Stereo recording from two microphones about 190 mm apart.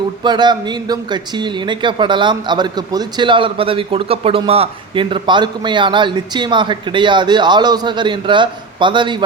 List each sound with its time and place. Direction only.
0.2 s speech: 25° right (ahead or behind)